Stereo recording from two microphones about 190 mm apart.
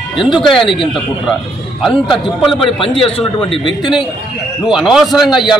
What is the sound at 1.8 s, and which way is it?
Speech, centre (ahead or behind).